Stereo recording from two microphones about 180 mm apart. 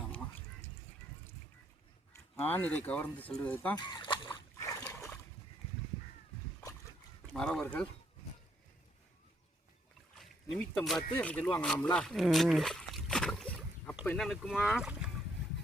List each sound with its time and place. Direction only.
2.5 s speech: 10° left (ahead or behind)
3.8 s speech: 25° left (ahead or behind)
4.6 s a sound: 15° left (ahead or behind)
7.3 s speech: 5° left (ahead or behind)
10.2 s a sound: centre (ahead or behind)
10.6 s speech: 5° left (ahead or behind)